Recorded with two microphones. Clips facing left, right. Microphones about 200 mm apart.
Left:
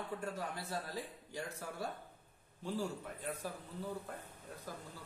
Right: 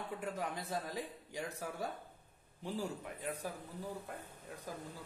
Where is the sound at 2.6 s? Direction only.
15° right (ahead or behind).